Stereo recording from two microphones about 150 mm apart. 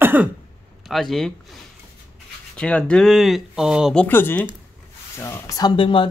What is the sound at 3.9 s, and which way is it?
Speech, 10° left (ahead or behind).